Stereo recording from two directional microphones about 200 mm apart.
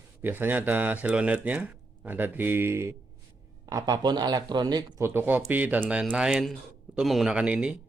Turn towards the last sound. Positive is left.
turn(degrees=-5)  # may be behind; listen again after turning